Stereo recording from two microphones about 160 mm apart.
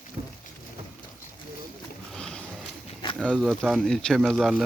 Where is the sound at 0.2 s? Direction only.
40° right (ahead or behind).